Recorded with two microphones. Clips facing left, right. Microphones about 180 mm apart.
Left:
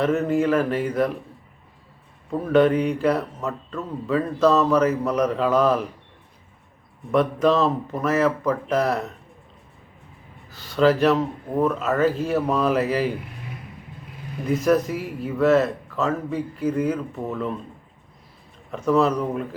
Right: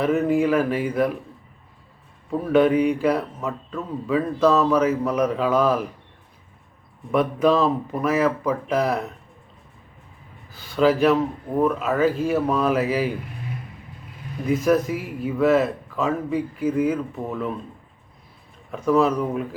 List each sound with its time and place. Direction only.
0.0 s speech: 5° right (ahead or behind)
2.3 s speech: 5° right (ahead or behind)
7.1 s speech: 5° right (ahead or behind)
10.6 s speech: 5° right (ahead or behind)
14.4 s speech: centre (ahead or behind)
18.7 s speech: 5° right (ahead or behind)